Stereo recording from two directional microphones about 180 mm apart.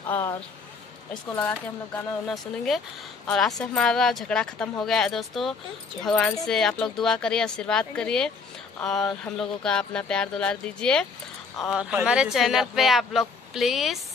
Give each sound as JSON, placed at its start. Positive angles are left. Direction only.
{"t": 0.1, "sound": "speech", "side_deg": 15}
{"t": 2.2, "sound": "speech", "side_deg": 0}